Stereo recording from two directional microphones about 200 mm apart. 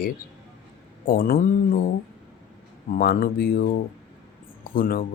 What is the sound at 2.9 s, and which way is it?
Speech, 50° left (ahead or behind).